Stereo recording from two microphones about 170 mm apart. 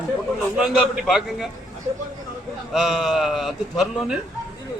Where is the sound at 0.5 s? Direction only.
5° right (ahead or behind).